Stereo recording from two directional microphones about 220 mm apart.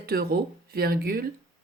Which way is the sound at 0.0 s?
45° right (ahead or behind).